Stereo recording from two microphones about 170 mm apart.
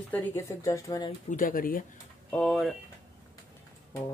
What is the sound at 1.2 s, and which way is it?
Speech, 55° left (ahead or behind).